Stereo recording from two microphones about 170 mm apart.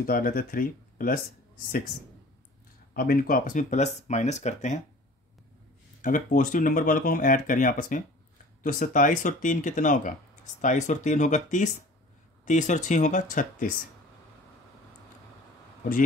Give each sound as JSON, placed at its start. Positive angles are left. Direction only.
{"t": 0.0, "sound": "speech", "side_deg": 60}
{"t": 2.9, "sound": "speech", "side_deg": 55}
{"t": 6.0, "sound": "speech", "side_deg": 50}